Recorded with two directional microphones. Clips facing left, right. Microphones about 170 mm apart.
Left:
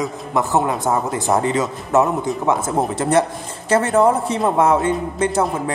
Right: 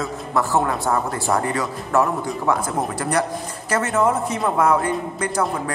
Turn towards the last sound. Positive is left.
turn(degrees=25)  # may be behind; listen again after turning